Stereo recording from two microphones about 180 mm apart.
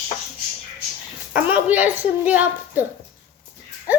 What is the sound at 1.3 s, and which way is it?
A woman's voice, 10° right (ahead or behind).